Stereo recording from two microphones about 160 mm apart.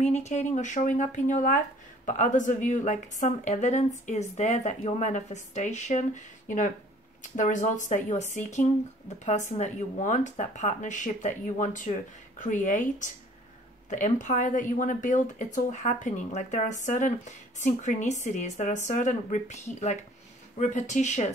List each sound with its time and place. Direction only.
0.0 s a woman's voice: 45° left (ahead or behind)
7.3 s a woman's voice: 50° left (ahead or behind)